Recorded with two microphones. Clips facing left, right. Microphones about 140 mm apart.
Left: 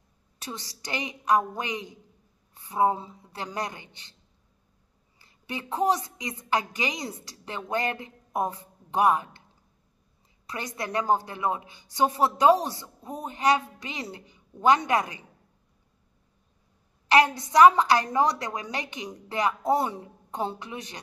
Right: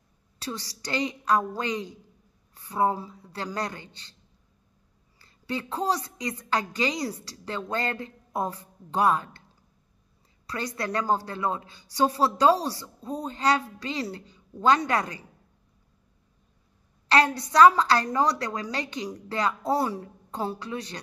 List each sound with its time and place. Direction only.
0.4 s a woman's voice: 20° left (ahead or behind)
5.2 s a woman's voice: 20° left (ahead or behind)
10.4 s a woman's voice: 20° left (ahead or behind)
17.1 s a woman's voice: 20° left (ahead or behind)